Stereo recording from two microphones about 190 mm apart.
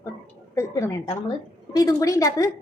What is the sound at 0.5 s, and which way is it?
A woman's voice, 15° left (ahead or behind).